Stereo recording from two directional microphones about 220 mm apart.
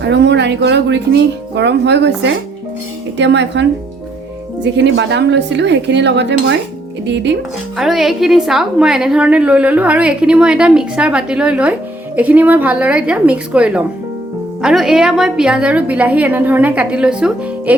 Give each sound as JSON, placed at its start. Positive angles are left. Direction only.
{"t": 0.0, "sound": "speech", "side_deg": -50}
{"t": 7.8, "sound": "a woman's voice", "side_deg": 0}